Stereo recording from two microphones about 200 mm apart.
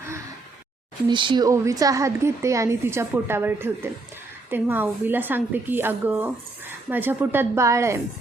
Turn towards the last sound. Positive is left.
turn(degrees=-15)  # may be behind; listen again after turning